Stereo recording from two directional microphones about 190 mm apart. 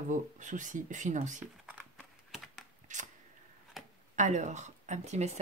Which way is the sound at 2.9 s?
40° right (ahead or behind).